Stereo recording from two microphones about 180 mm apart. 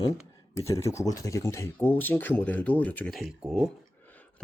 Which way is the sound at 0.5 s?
15° left (ahead or behind).